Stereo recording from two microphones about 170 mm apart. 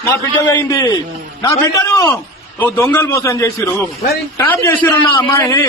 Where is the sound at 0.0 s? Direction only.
15° left (ahead or behind).